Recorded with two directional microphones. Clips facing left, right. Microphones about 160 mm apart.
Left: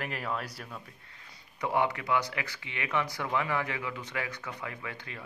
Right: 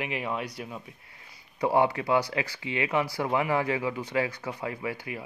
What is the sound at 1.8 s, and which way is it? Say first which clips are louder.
Speech: right 4 dB; 25° right (ahead or behind).